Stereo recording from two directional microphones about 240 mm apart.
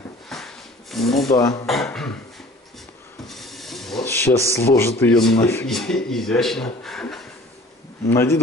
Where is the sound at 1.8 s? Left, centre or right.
Centre.